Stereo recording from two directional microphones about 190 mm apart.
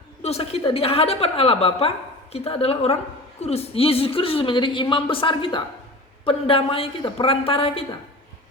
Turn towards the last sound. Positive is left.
turn(degrees=30)  # may be behind; listen again after turning